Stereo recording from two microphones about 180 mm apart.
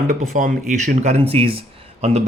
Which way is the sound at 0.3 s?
45° right (ahead or behind).